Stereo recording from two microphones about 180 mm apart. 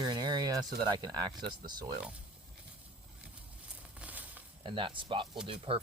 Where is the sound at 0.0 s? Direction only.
25° right (ahead or behind).